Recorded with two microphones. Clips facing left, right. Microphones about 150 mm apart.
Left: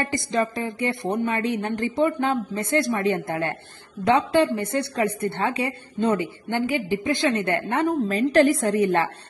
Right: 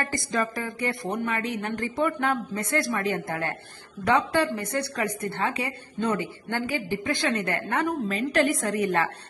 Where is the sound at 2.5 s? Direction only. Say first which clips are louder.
Left 4 dB; 25° left (ahead or behind).